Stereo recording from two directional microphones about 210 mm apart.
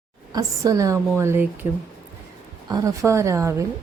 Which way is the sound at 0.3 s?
15° right (ahead or behind).